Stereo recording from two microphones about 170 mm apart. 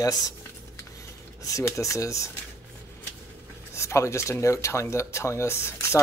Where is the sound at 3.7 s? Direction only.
15° left (ahead or behind).